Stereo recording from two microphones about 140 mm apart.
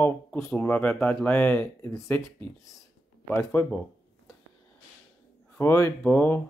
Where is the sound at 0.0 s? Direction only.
15° left (ahead or behind).